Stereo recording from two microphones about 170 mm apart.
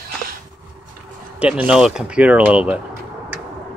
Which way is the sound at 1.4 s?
5° right (ahead or behind).